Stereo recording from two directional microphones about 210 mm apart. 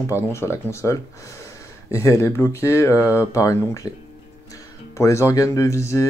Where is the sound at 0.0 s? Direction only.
15° left (ahead or behind).